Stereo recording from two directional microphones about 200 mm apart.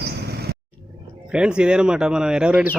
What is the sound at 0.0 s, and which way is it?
Vehicle, 55° right (ahead or behind).